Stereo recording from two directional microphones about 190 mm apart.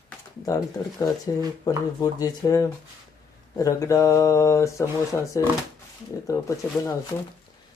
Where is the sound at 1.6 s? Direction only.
20° left (ahead or behind).